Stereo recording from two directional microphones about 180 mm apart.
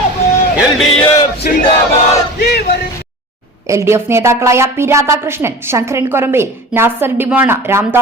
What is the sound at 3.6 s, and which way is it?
A woman's voice, 15° right (ahead or behind).